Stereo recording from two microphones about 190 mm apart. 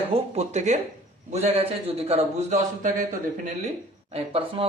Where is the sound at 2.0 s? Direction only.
30° right (ahead or behind).